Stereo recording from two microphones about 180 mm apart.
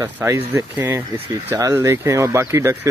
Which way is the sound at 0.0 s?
15° right (ahead or behind).